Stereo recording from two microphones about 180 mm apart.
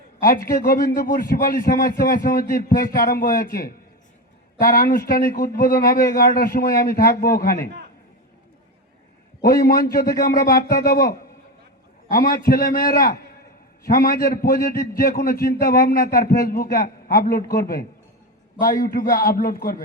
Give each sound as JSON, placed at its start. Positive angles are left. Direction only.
{"t": 0.3, "sound": "a man's voice", "side_deg": 55}
{"t": 9.4, "sound": "a man's voice", "side_deg": 55}
{"t": 12.1, "sound": "a man's voice", "side_deg": 55}